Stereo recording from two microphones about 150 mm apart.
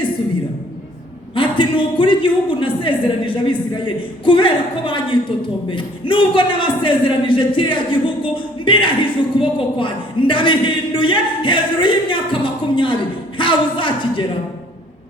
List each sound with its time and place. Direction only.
1.4 s speech: 35° left (ahead or behind)